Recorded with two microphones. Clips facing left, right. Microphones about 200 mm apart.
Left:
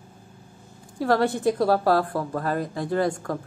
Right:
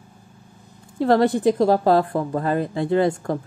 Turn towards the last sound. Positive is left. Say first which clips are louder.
# right 5 dB
turn(degrees=-20)  # may be behind; listen again after turning